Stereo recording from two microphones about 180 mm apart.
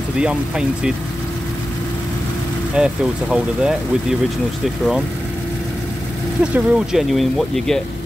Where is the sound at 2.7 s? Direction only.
5° right (ahead or behind).